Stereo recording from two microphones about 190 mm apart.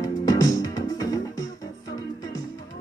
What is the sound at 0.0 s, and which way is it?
Music, 20° left (ahead or behind).